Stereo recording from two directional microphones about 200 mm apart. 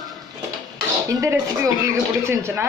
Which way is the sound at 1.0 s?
15° right (ahead or behind).